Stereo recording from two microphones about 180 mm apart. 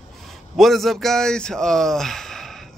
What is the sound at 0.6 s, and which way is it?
Speech, centre (ahead or behind).